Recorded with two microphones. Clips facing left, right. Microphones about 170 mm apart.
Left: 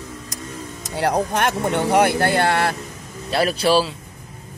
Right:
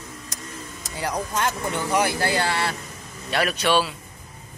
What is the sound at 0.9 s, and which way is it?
Speech, 60° left (ahead or behind).